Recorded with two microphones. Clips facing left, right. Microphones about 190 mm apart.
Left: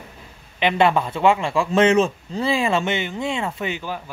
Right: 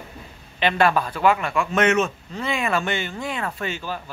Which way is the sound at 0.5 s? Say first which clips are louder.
Left 2 dB; 20° left (ahead or behind).